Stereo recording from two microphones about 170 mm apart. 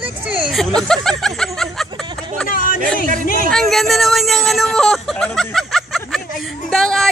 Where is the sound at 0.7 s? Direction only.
5° left (ahead or behind).